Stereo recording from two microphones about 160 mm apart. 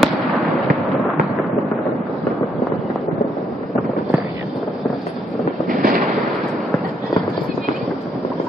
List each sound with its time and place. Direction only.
0.0 s fireworks: centre (ahead or behind)
5.7 s fireworks: 60° right (ahead or behind)